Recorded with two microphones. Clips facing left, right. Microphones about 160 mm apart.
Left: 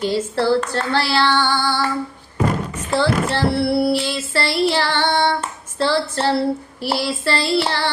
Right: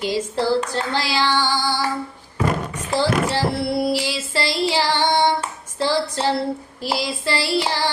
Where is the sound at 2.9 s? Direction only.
15° right (ahead or behind).